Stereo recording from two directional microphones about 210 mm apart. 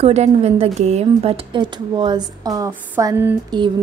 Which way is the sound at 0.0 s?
30° right (ahead or behind).